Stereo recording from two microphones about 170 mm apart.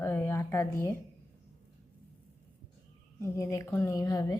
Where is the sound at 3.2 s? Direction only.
15° left (ahead or behind).